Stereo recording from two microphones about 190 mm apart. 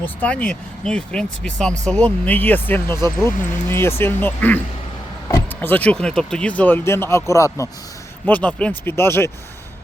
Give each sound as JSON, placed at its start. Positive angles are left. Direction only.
{"t": 0.0, "sound": "speech", "side_deg": 5}